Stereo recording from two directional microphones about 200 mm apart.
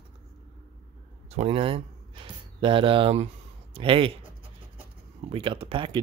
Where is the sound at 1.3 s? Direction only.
30° right (ahead or behind).